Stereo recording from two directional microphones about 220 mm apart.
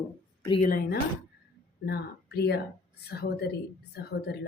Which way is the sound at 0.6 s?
40° left (ahead or behind).